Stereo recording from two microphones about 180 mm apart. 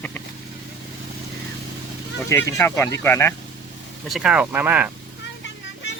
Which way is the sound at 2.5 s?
15° left (ahead or behind).